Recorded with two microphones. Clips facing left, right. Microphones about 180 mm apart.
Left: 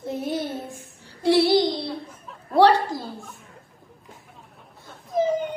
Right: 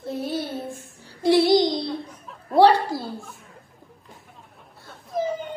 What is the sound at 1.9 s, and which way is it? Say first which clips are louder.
Laughter: right 2 dB; centre (ahead or behind).